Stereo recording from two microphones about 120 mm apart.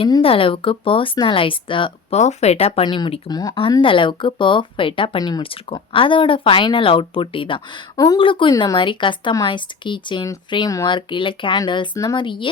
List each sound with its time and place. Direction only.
0.2 s speech: 50° left (ahead or behind)
2.1 s speech: 70° left (ahead or behind)
2.8 s speech: 40° left (ahead or behind)
7.9 s speech: 30° left (ahead or behind)
8.2 s speech: 45° left (ahead or behind)